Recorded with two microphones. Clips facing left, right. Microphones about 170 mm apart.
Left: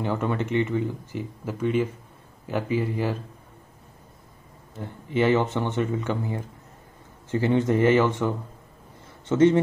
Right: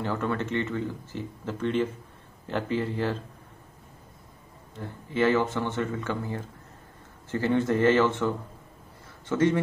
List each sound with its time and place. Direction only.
0.0 s speech: 15° left (ahead or behind)
5.1 s speech: 20° left (ahead or behind)
9.3 s a man's voice: 25° left (ahead or behind)